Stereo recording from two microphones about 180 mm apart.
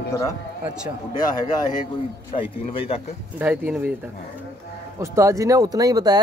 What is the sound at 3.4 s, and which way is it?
Speech, 10° right (ahead or behind).